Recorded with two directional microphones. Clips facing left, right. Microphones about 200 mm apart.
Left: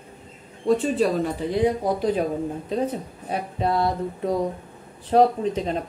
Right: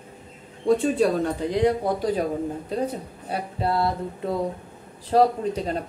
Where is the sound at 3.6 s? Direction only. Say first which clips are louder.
Left 1 dB; 25° left (ahead or behind).